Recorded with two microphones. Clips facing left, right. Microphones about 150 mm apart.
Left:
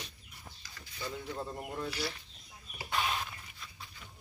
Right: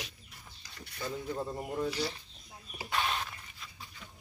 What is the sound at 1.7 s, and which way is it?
Speech, 15° right (ahead or behind).